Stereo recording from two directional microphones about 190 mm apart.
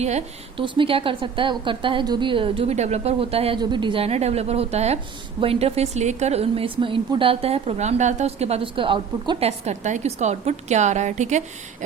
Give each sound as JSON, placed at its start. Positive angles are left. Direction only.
{"t": 0.0, "sound": "a woman's voice", "side_deg": -35}
{"t": 9.5, "sound": "a woman's voice", "side_deg": -40}